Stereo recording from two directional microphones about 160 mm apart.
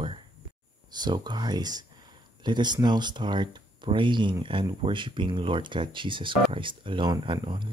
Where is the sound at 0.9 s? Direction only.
25° right (ahead or behind).